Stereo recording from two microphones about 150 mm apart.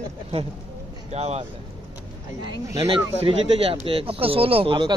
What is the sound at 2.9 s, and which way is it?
Speech, 40° right (ahead or behind).